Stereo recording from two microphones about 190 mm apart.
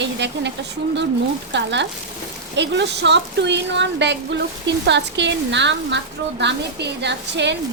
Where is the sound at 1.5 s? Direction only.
65° right (ahead or behind).